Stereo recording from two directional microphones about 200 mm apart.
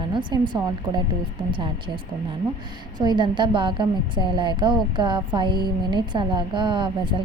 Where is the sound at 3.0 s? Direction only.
20° right (ahead or behind).